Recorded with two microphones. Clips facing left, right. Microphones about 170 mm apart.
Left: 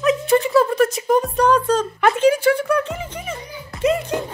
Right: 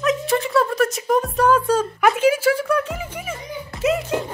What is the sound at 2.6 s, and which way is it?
Music, centre (ahead or behind).